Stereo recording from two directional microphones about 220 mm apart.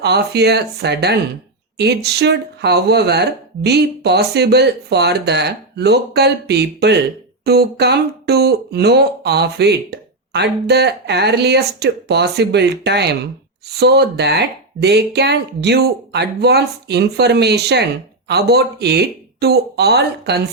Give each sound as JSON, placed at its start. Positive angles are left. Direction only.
{"t": 0.0, "sound": "speech", "side_deg": -50}